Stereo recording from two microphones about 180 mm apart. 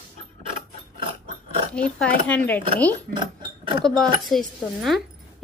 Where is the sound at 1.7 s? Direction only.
5° left (ahead or behind).